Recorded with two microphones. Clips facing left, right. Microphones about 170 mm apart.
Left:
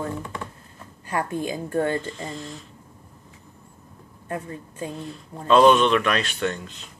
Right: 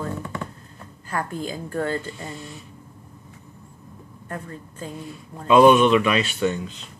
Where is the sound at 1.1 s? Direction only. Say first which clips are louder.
Left 2 dB; 20° left (ahead or behind).